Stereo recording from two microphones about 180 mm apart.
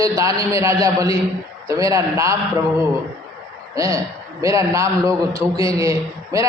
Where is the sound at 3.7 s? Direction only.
15° right (ahead or behind).